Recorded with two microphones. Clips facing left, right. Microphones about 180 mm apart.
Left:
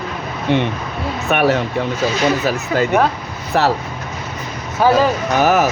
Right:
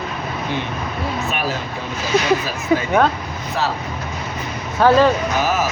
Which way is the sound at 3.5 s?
70° left (ahead or behind).